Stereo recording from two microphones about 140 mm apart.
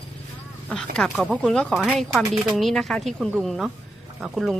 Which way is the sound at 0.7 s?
5° left (ahead or behind).